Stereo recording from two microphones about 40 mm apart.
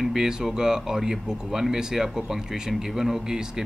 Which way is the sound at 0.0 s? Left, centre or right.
Centre.